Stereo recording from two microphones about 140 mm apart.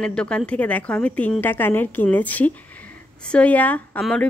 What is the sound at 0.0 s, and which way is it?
A woman's voice, 5° left (ahead or behind).